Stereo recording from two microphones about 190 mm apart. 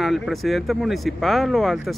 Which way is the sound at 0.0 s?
Centre (ahead or behind).